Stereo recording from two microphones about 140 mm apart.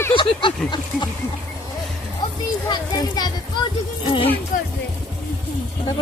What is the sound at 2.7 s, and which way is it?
Speech, 30° left (ahead or behind).